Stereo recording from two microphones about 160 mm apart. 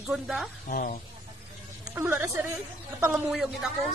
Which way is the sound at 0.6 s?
65° left (ahead or behind).